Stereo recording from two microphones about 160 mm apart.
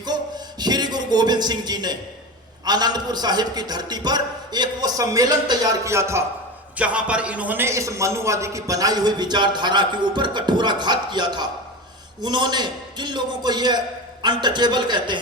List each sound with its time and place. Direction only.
0.0 s a sound: 25° right (ahead or behind)
2.6 s a man's voice: 25° right (ahead or behind)
6.7 s a man's voice: 5° right (ahead or behind); by 15.2 s 30° right (ahead or behind)